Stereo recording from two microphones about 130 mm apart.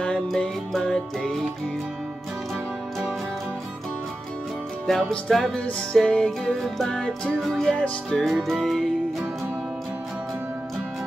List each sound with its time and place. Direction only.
0.0 s music: 5° left (ahead or behind)
4.8 s music: centre (ahead or behind)